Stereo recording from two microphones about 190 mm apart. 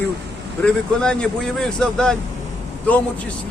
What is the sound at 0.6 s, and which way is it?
Speech, 5° left (ahead or behind).